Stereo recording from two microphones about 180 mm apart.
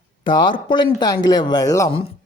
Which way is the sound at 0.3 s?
25° left (ahead or behind).